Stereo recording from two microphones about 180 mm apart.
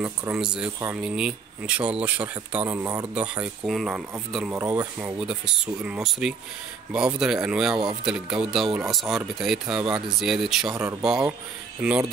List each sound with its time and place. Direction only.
0.3 s speech: 5° right (ahead or behind)
10.7 s speech: 15° right (ahead or behind)
11.0 s speech: 5° right (ahead or behind)